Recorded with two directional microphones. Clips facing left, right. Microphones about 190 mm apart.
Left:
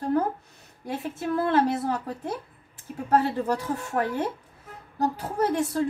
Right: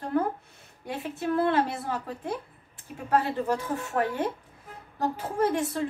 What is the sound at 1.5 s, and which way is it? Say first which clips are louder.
A woman's voice: left 4 dB; 40° left (ahead or behind).